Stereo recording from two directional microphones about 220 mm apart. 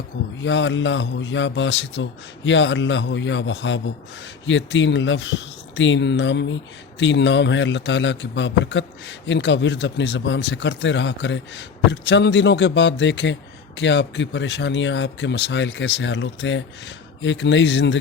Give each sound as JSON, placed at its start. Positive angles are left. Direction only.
{"t": 0.4, "sound": "a man's voice", "side_deg": 55}